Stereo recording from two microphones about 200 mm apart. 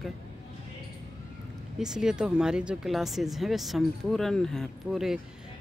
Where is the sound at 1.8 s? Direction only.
5° right (ahead or behind).